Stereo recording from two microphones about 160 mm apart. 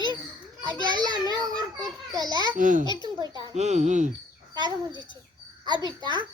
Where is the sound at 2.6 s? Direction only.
55° right (ahead or behind).